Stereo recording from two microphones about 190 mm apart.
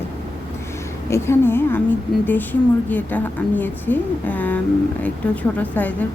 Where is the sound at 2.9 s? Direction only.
10° left (ahead or behind).